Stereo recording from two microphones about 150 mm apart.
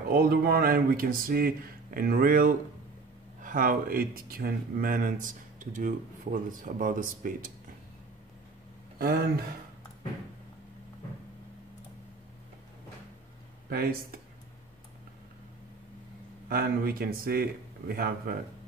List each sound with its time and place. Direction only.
0.1 s speech: 90° right; by 7.3 s 60° right (ahead or behind)
8.9 s speech: 90° right
13.7 s speech: 80° right
16.4 s speech: 85° right